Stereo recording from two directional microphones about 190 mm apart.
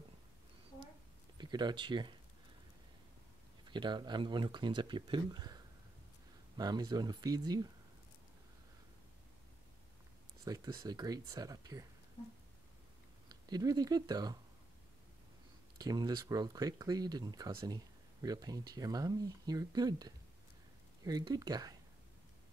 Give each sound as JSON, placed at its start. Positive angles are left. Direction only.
{"t": 1.4, "sound": "speech", "side_deg": -25}
{"t": 3.6, "sound": "speech", "side_deg": -25}
{"t": 10.4, "sound": "speech", "side_deg": -20}
{"t": 13.3, "sound": "speech", "side_deg": -20}
{"t": 15.8, "sound": "speech", "side_deg": -20}